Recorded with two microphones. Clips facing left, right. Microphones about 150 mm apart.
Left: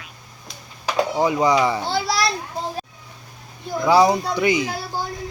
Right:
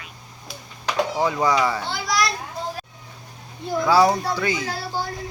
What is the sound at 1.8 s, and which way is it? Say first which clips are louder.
Speech: left 2 dB; 30° left (ahead or behind).